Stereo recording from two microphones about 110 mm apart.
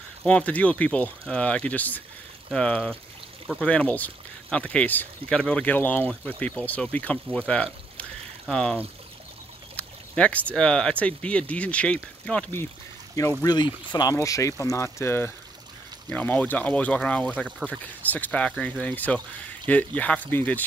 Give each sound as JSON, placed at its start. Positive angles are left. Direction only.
{"t": 0.2, "sound": "speech", "side_deg": 10}
{"t": 7.3, "sound": "pour", "side_deg": 10}
{"t": 9.8, "sound": "speech", "side_deg": 10}
{"t": 13.4, "sound": "speech", "side_deg": 40}